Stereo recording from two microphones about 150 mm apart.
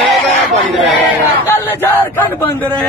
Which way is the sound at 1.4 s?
15° left (ahead or behind).